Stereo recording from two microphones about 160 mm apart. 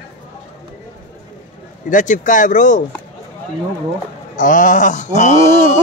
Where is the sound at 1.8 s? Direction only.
55° left (ahead or behind).